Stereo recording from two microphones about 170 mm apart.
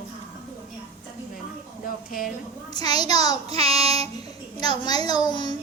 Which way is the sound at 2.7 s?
25° left (ahead or behind).